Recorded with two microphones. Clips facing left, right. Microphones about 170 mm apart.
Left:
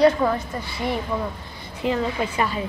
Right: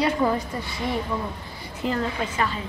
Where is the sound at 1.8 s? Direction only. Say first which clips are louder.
Left 3 dB; 5° left (ahead or behind).